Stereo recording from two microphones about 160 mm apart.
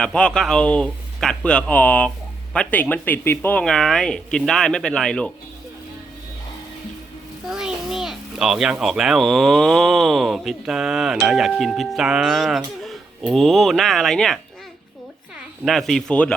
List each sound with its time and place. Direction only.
0.0 s speech: 5° left (ahead or behind)
7.5 s a child's voice: 5° right (ahead or behind)
15.6 s speech: centre (ahead or behind)